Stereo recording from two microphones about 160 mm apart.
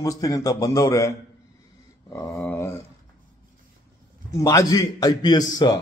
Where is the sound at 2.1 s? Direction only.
15° left (ahead or behind).